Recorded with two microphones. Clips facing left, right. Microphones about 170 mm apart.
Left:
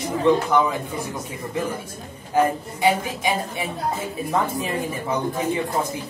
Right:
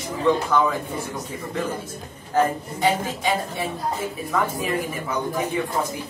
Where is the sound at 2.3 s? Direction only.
15° left (ahead or behind).